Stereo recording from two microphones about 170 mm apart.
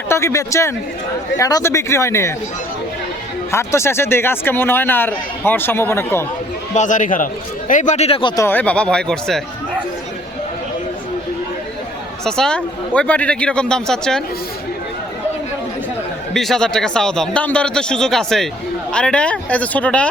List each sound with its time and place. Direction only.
0.1 s speech: 15° left (ahead or behind)
3.5 s speech: 15° left (ahead or behind)
6.7 s a man's voice: 50° left (ahead or behind)
8.4 s speech: 10° left (ahead or behind)
12.2 s a man's voice: 5° left (ahead or behind)
16.3 s a man's voice: centre (ahead or behind)